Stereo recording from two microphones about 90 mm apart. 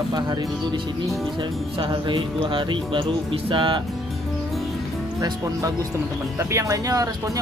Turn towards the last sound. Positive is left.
turn(degrees=-40)  # may be behind; listen again after turning